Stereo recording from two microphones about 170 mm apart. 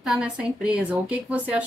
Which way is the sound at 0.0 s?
5° right (ahead or behind).